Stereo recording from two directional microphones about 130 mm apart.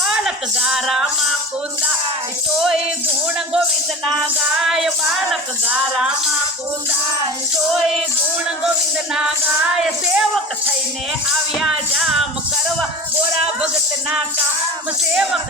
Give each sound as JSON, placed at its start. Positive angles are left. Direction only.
{"t": 0.0, "sound": "a sound", "side_deg": -5}
{"t": 4.6, "sound": "music", "side_deg": -5}
{"t": 9.7, "sound": "music", "side_deg": -5}
{"t": 11.6, "sound": "music", "side_deg": -5}
{"t": 15.1, "sound": "music", "side_deg": -5}